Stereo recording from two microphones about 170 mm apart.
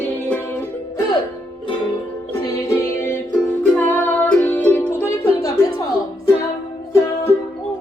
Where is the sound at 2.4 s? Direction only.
20° left (ahead or behind).